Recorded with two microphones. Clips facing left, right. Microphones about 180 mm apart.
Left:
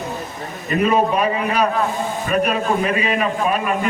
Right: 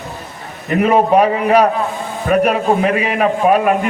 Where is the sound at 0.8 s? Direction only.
70° right (ahead or behind).